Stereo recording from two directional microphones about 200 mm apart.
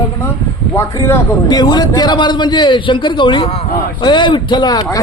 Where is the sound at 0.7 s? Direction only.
15° left (ahead or behind).